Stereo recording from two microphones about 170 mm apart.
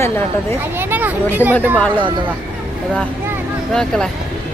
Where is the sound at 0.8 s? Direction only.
10° right (ahead or behind).